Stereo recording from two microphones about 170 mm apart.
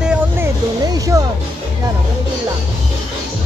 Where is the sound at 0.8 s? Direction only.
20° right (ahead or behind).